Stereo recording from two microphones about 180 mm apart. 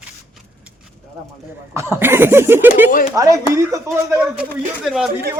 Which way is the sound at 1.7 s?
15° right (ahead or behind).